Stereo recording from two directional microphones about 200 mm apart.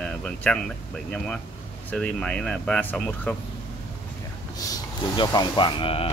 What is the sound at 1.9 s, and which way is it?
Speech, 5° left (ahead or behind).